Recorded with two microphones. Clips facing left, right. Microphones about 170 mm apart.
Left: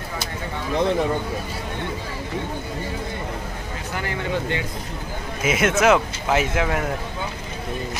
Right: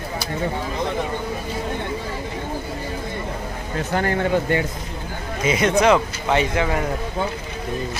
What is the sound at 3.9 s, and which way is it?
Speech, 50° right (ahead or behind).